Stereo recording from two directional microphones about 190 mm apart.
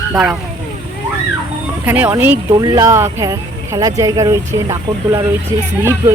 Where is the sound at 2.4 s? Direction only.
20° right (ahead or behind).